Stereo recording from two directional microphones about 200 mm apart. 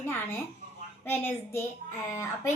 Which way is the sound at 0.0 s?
10° left (ahead or behind).